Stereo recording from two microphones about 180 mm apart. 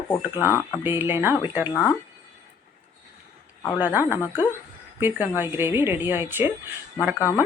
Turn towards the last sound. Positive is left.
turn(degrees=15)  # may be behind; listen again after turning